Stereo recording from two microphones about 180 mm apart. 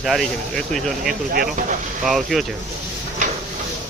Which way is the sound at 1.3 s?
50° right (ahead or behind).